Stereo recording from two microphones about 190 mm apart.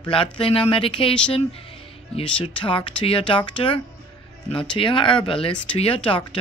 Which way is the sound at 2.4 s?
25° left (ahead or behind).